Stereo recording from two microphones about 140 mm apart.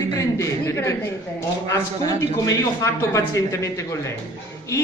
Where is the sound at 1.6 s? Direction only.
20° left (ahead or behind).